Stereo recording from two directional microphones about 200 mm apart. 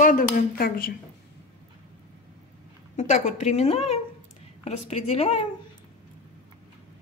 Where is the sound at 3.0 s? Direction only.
35° left (ahead or behind).